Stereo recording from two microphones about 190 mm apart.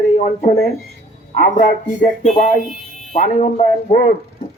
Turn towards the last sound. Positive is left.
turn(degrees=40)  # may be behind; listen again after turning